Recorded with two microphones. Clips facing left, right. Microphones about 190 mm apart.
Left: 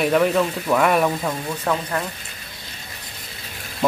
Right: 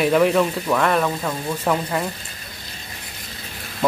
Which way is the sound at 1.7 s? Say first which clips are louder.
Right 2 dB; 10° right (ahead or behind).